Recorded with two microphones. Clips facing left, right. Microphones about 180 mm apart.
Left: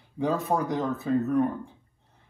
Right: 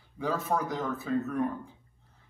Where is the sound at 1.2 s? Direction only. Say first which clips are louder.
Left 6 dB; 35° left (ahead or behind).